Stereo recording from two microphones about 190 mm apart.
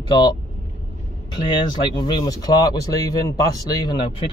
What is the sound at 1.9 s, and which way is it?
Speech, 25° left (ahead or behind).